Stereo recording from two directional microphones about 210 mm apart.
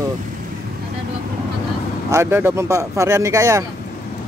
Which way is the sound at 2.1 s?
10° right (ahead or behind).